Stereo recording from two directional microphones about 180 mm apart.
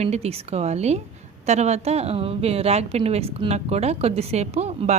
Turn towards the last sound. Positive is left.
turn(degrees=-40)  # may be behind; listen again after turning